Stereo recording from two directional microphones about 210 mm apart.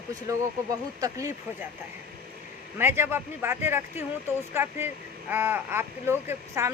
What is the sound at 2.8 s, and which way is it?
Speech, 10° right (ahead or behind).